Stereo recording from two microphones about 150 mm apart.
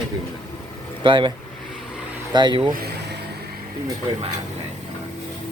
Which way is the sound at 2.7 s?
90° right.